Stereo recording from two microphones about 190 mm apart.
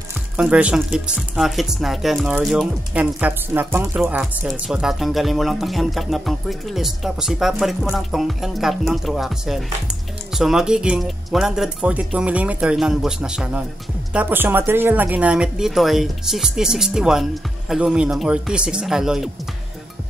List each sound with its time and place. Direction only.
0.4 s speech: 5° right (ahead or behind)